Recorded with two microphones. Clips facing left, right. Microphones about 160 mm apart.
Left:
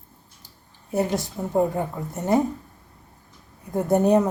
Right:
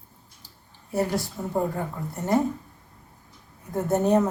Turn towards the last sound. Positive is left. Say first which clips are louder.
# left 3 dB
turn(degrees=10)  # may be behind; listen again after turning